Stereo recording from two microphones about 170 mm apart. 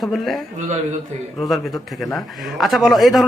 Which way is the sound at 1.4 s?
Centre (ahead or behind).